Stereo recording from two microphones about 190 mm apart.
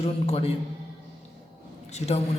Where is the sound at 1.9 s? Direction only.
35° left (ahead or behind).